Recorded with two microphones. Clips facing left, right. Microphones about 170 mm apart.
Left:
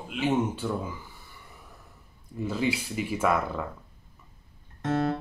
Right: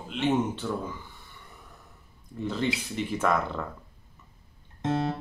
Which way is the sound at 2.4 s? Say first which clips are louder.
Left 1 dB; 5° left (ahead or behind).